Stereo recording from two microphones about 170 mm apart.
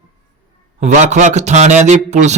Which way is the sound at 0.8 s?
45° right (ahead or behind).